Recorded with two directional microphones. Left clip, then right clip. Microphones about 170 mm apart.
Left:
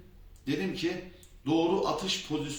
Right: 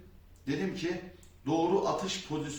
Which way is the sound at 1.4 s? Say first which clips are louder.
Left 1 dB; 10° right (ahead or behind).